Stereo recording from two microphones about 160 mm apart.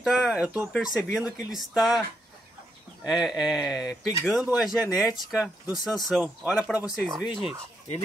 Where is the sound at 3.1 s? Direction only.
Centre (ahead or behind).